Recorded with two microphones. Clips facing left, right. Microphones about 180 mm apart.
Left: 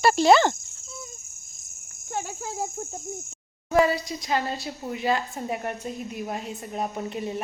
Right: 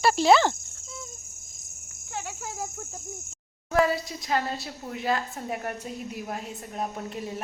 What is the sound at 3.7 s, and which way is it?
Speech, centre (ahead or behind).